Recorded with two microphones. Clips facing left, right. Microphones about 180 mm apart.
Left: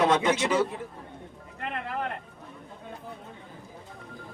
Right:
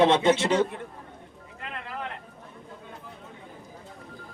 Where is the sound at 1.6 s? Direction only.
50° left (ahead or behind).